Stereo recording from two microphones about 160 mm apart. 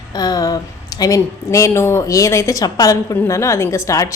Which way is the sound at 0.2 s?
25° left (ahead or behind).